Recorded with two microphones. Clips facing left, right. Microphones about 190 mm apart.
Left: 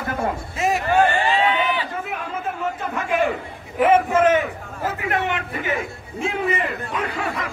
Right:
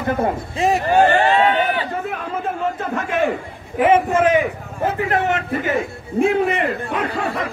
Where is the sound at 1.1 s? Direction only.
65° right (ahead or behind).